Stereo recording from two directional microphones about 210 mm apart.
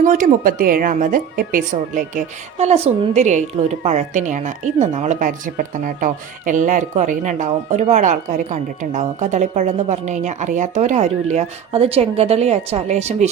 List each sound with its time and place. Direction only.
0.0 s speech: 40° right (ahead or behind)